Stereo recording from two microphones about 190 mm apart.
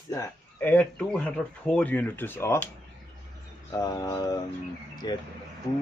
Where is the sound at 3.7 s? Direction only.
20° left (ahead or behind).